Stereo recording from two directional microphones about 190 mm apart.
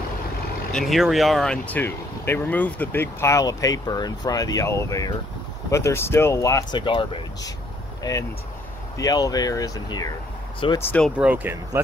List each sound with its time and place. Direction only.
0.7 s speech: centre (ahead or behind); by 10.1 s 20° left (ahead or behind)
10.8 s speech: 5° left (ahead or behind)
11.1 s speech: 10° right (ahead or behind)